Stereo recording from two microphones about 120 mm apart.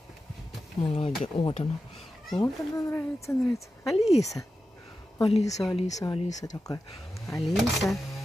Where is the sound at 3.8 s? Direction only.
Centre (ahead or behind).